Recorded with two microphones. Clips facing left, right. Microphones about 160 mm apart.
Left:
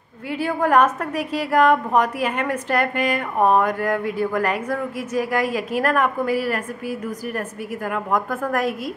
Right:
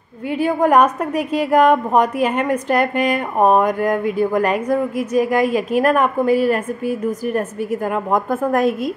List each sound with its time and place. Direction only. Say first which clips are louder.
0.3 s a woman's voice: right 4 dB; 20° right (ahead or behind)